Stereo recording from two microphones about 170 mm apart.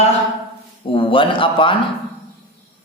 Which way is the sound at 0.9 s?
30° left (ahead or behind).